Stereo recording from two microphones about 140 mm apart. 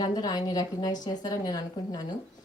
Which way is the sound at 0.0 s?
30° left (ahead or behind).